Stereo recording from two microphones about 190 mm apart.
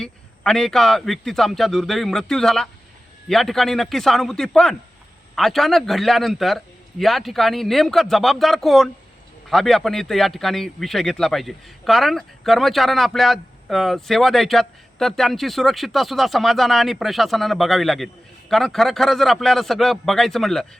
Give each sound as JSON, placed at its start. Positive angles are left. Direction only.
{"t": 0.0, "sound": "a man's voice", "side_deg": 0}